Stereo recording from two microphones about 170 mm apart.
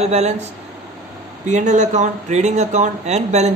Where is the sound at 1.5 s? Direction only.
45° right (ahead or behind).